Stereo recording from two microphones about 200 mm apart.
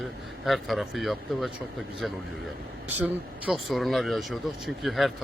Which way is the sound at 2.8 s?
10° right (ahead or behind).